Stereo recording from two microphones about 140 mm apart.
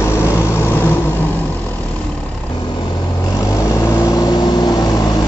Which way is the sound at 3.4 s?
25° left (ahead or behind).